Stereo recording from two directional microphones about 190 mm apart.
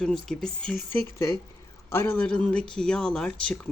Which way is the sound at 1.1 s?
15° left (ahead or behind).